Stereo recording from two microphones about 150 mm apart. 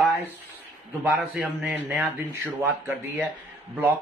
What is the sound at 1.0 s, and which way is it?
A man's voice, 15° right (ahead or behind).